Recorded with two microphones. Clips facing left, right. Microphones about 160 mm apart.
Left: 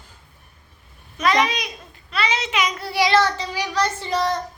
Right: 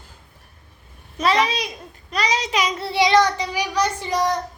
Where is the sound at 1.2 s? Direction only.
30° right (ahead or behind); by 4.4 s 10° right (ahead or behind).